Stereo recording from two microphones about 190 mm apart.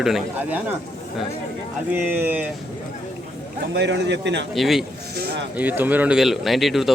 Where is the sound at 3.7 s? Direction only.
65° right (ahead or behind).